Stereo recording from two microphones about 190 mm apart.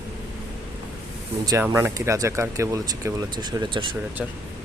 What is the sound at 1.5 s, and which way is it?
Speech, 15° right (ahead or behind).